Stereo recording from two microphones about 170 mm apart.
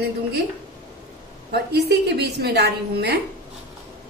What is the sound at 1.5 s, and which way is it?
A woman's voice, 70° right (ahead or behind).